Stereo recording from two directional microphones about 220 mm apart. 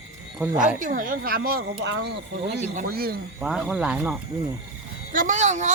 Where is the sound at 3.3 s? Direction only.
5° right (ahead or behind).